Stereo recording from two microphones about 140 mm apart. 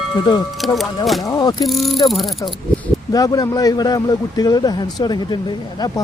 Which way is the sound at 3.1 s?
25° left (ahead or behind).